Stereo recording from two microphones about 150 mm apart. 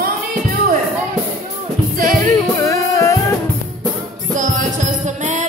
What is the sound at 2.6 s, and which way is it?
Music, 20° left (ahead or behind).